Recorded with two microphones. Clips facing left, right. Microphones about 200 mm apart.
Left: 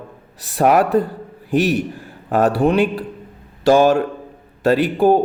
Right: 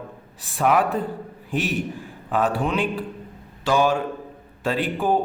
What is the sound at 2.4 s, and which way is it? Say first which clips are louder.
Speech: left 10 dB; 65° left (ahead or behind).